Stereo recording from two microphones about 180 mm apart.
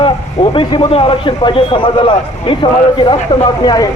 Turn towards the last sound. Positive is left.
turn(degrees=25)  # may be behind; listen again after turning